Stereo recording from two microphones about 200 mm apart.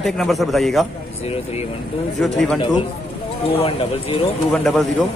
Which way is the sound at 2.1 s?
Centre (ahead or behind).